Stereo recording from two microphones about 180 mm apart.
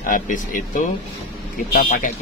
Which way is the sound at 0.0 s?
50° left (ahead or behind).